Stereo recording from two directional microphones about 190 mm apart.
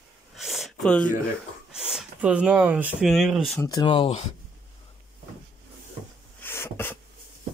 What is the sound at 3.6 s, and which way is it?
Speech, 20° left (ahead or behind).